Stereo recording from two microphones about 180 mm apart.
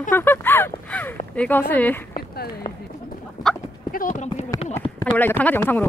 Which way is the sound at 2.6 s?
35° left (ahead or behind).